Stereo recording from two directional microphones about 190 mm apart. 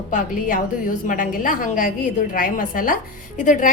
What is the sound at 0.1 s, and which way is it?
A woman's voice, 45° left (ahead or behind).